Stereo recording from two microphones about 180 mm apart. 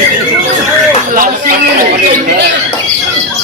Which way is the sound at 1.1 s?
50° right (ahead or behind).